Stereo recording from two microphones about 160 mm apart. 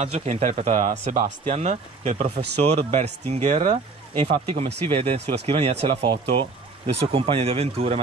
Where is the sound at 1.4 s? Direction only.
45° right (ahead or behind).